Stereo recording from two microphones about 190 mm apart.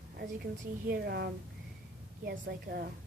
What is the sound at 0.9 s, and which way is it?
A woman's voice, 55° right (ahead or behind).